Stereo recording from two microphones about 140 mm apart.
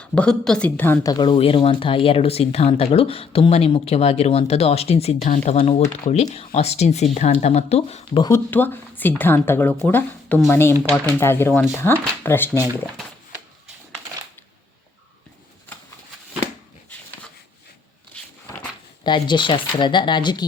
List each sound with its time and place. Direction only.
0.0 s a woman's voice: 10° left (ahead or behind)
1.0 s speech: 35° left (ahead or behind)
8.3 s a woman's voice: 15° left (ahead or behind)
19.0 s speech: 35° left (ahead or behind)